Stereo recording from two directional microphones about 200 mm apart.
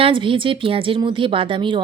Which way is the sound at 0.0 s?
25° right (ahead or behind).